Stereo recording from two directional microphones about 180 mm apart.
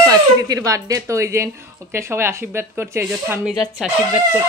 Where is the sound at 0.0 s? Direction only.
20° right (ahead or behind).